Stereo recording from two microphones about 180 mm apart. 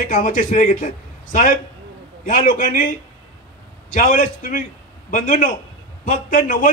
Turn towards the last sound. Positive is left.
turn(degrees=45)  # may be behind; listen again after turning